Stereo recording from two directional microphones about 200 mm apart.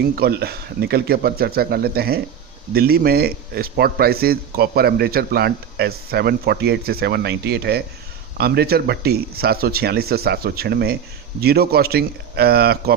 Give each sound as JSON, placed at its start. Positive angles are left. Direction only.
{"t": 0.2, "sound": "speech", "side_deg": -50}